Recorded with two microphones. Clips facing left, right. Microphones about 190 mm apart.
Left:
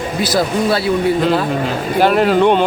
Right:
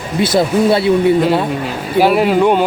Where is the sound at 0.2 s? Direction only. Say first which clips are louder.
Right 4 dB; 25° right (ahead or behind).